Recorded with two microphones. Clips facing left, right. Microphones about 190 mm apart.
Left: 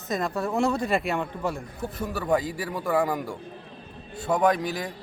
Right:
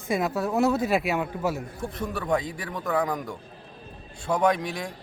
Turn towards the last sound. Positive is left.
turn(degrees=0)  # may be behind; listen again after turning